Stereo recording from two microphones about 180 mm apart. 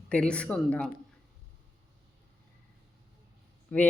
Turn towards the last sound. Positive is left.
turn(degrees=5)  # may be behind; listen again after turning